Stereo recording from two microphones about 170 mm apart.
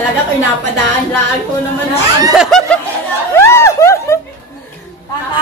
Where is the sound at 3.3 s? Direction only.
15° left (ahead or behind).